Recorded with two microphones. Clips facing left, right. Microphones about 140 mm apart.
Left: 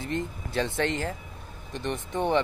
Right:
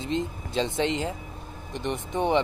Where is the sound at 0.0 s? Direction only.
20° right (ahead or behind).